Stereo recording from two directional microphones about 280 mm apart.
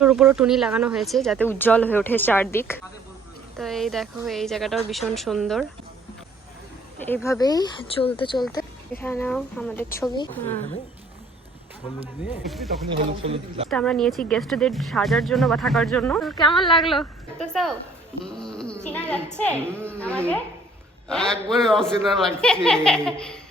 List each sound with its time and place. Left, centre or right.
0.0 s speech: centre
7.0 s speech: centre
12.2 s speech: centre
12.9 s speech: right
13.7 s speech: centre
19.5 s a woman's voice: centre
20.0 s speech: centre